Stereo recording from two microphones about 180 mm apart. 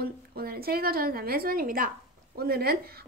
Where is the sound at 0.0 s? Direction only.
55° right (ahead or behind).